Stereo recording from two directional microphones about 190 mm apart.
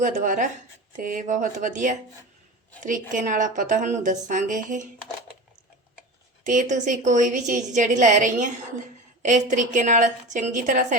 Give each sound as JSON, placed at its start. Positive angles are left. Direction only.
{"t": 0.0, "sound": "a woman's voice", "side_deg": -40}
{"t": 3.1, "sound": "speech", "side_deg": -45}
{"t": 6.4, "sound": "a woman's voice", "side_deg": -45}